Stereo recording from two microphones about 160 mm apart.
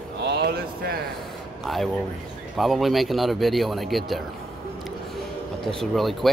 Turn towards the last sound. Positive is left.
turn(degrees=0)  # may be behind; listen again after turning